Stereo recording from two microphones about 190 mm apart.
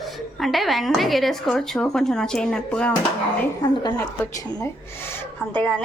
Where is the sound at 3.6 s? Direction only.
20° left (ahead or behind).